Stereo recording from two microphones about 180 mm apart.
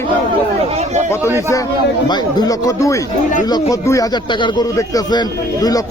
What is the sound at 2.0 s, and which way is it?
Speech, 25° left (ahead or behind).